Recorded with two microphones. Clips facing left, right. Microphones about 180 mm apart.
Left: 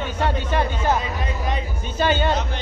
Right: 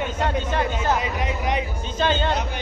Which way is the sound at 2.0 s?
10° left (ahead or behind).